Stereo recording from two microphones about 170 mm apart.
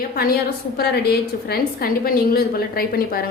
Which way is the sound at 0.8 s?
70° left (ahead or behind).